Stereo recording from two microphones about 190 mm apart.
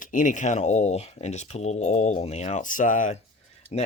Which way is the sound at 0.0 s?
45° left (ahead or behind).